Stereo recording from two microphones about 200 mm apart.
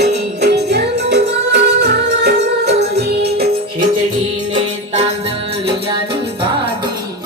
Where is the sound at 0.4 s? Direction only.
55° right (ahead or behind).